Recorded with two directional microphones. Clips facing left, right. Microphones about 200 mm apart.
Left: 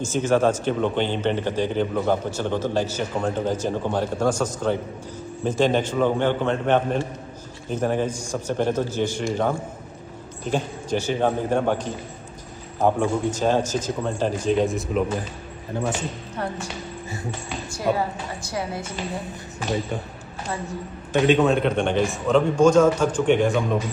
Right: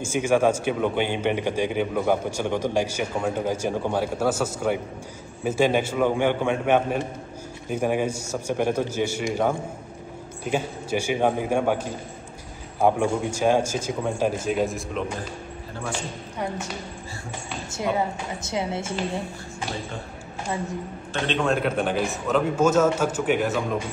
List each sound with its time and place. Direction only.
0.0 s a man's voice: 10° right (ahead or behind)
17.6 s a woman's voice: 20° right (ahead or behind)
21.1 s a man's voice: 10° left (ahead or behind)
21.5 s a man's voice: 5° right (ahead or behind)